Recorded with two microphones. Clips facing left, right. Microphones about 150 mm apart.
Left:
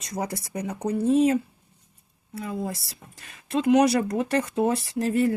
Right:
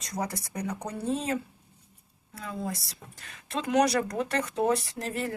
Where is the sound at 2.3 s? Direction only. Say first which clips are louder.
Left 4 dB; 25° left (ahead or behind).